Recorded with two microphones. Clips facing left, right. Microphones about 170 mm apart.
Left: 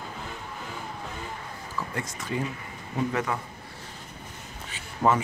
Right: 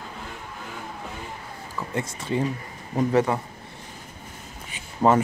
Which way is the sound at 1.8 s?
25° right (ahead or behind).